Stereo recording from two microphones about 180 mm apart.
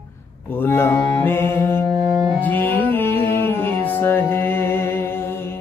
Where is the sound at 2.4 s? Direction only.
10° left (ahead or behind).